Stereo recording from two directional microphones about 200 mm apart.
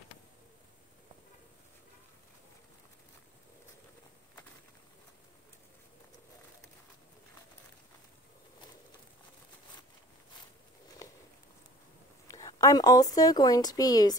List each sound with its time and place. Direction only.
11.0 s walk: 15° left (ahead or behind)
12.3 s a woman's voice: 15° left (ahead or behind)